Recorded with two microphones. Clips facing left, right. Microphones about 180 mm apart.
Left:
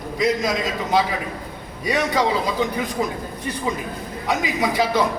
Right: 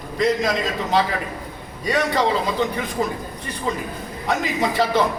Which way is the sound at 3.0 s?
5° left (ahead or behind).